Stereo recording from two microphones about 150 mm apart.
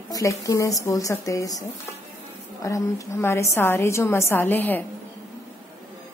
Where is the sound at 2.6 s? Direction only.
20° left (ahead or behind).